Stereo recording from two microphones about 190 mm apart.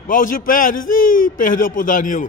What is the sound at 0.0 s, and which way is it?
A man's voice, 45° left (ahead or behind).